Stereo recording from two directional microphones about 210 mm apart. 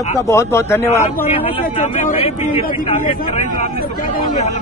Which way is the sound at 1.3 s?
30° left (ahead or behind).